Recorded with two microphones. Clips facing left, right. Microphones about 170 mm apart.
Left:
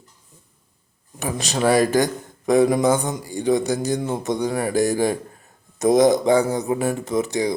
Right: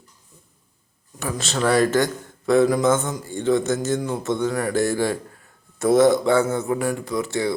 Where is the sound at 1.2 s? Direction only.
15° left (ahead or behind).